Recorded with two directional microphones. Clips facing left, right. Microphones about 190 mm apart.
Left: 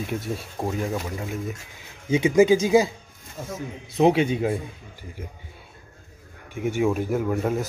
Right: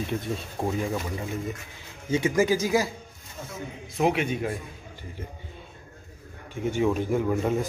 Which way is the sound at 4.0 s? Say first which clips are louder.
Left 5 dB; 30° left (ahead or behind).